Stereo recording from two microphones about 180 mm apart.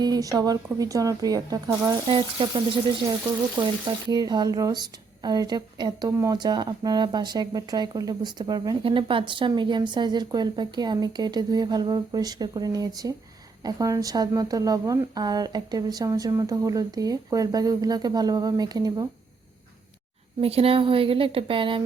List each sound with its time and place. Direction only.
0.0 s a woman's voice: 20° right (ahead or behind)
4.1 s a woman's voice: 20° right (ahead or behind)
20.4 s speech: 35° right (ahead or behind)